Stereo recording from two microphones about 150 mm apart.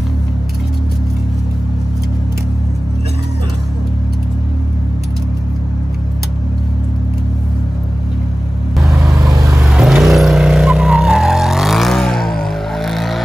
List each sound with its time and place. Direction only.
8.7 s vehicle: centre (ahead or behind)
9.3 s vehicle: 20° right (ahead or behind)
9.6 s vehicle: 5° right (ahead or behind)